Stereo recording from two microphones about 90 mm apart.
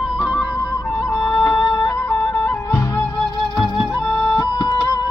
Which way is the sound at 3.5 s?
55° left (ahead or behind).